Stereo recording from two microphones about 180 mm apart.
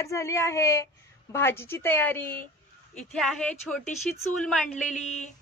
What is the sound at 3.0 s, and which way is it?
A woman's voice, centre (ahead or behind).